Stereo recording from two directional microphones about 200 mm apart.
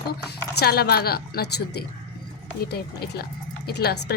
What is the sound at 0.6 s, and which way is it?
Speech, 50° left (ahead or behind).